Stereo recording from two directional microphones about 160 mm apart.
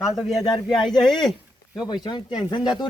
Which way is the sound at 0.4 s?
30° left (ahead or behind).